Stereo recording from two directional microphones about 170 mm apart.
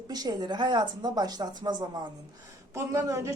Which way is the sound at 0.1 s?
25° right (ahead or behind).